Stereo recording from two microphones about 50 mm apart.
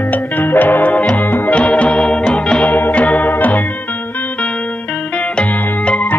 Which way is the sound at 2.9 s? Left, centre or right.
Left.